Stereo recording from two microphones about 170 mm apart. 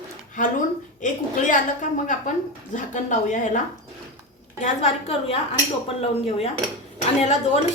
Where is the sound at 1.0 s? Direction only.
50° left (ahead or behind).